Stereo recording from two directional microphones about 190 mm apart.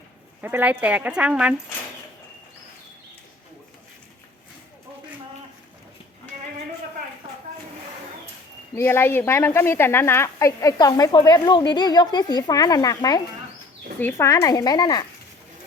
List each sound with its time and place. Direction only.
0.4 s speech: 10° right (ahead or behind)
8.7 s speech: 15° left (ahead or behind)